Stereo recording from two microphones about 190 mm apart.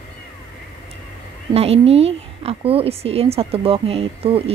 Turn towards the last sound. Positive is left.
turn(degrees=-30)  # may be behind; listen again after turning